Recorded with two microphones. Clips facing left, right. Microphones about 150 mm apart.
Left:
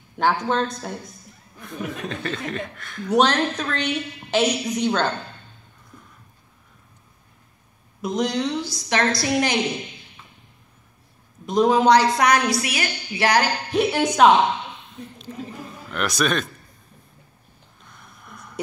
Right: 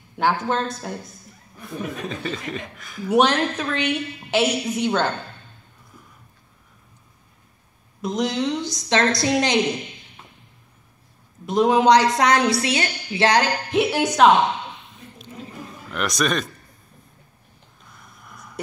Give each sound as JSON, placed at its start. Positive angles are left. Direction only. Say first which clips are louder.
{"t": 0.2, "sound": "speech", "louder": "left 1 dB", "side_deg": 0}
{"t": 8.0, "sound": "speech", "louder": "even", "side_deg": 0}
{"t": 8.5, "sound": "a woman's voice", "louder": "right 2 dB", "side_deg": -20}
{"t": 11.4, "sound": "a woman's voice", "louder": "even", "side_deg": -5}
{"t": 13.7, "sound": "speech", "louder": "even", "side_deg": 0}
{"t": 15.9, "sound": "speech", "louder": "even", "side_deg": 0}
{"t": 17.8, "sound": "a sound", "louder": "left 1 dB", "side_deg": 0}